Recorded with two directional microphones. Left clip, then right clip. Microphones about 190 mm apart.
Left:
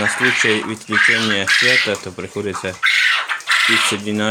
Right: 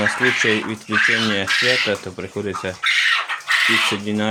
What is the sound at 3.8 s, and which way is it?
Speech, 10° left (ahead or behind).